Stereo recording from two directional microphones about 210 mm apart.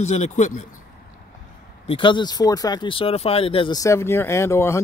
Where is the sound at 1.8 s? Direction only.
25° left (ahead or behind).